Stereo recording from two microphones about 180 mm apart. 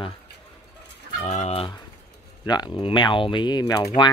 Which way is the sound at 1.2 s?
40° left (ahead or behind).